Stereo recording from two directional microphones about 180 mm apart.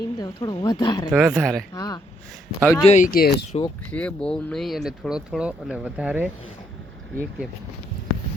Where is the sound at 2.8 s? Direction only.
45° left (ahead or behind).